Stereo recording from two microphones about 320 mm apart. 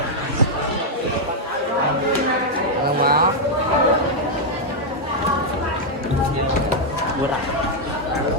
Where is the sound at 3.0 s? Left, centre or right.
Right.